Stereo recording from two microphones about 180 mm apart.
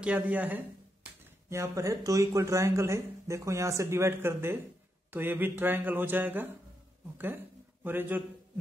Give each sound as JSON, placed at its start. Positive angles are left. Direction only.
{"t": 0.0, "sound": "speech", "side_deg": -5}